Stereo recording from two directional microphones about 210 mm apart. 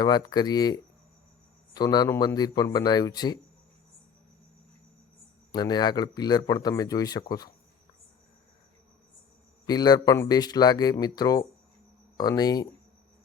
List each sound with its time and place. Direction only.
0.0 s speech: 20° left (ahead or behind)
5.5 s speech: 20° left (ahead or behind)
9.6 s speech: 20° left (ahead or behind)